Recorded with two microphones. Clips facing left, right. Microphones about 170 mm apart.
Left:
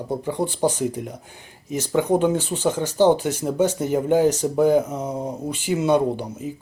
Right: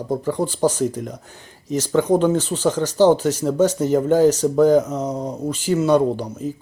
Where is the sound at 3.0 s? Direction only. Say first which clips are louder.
Right 2 dB; 15° left (ahead or behind).